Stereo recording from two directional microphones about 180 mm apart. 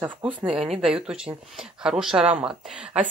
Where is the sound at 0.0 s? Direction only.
5° right (ahead or behind).